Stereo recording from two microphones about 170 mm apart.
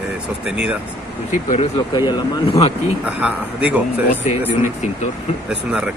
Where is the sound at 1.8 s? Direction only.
25° left (ahead or behind).